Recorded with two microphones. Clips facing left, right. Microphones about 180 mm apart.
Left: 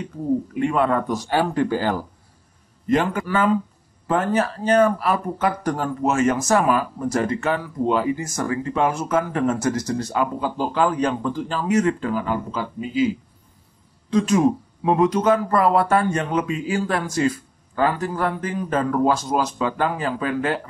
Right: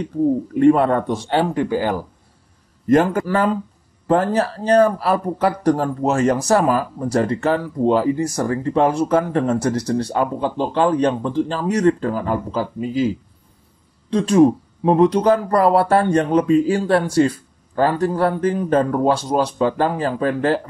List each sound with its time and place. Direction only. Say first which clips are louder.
0.6 s speech: right 9 dB; 40° right (ahead or behind); by 2.0 s 15° right (ahead or behind)
2.9 s a man's voice: right 5 dB; 45° right (ahead or behind)
3.3 s speech: right 1 dB; 35° right (ahead or behind)
14.1 s speech: right 4 dB; 30° right (ahead or behind)